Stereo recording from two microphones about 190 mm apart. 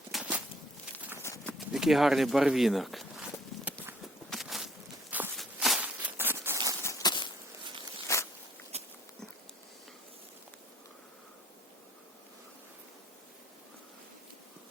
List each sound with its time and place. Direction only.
0.1 s walk: 5° right (ahead or behind)
1.2 s clip-clop: 15° left (ahead or behind)
1.5 s a sound: centre (ahead or behind)
6.8 s a sound: 20° left (ahead or behind)
8.0 s zipper: 15° left (ahead or behind)
8.7 s dog: 35° right (ahead or behind)